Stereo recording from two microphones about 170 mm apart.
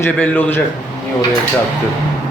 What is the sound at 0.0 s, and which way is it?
Speech, 10° left (ahead or behind).